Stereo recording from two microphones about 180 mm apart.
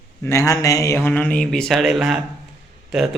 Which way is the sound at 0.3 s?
15° left (ahead or behind).